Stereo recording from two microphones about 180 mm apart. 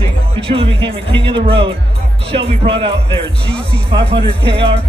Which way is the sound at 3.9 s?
30° right (ahead or behind).